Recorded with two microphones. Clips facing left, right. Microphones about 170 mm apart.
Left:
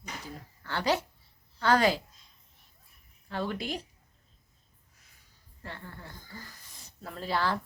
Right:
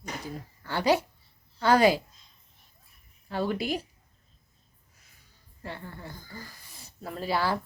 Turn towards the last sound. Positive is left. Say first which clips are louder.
# right 2 dB
turn(degrees=-10)  # may be behind; listen again after turning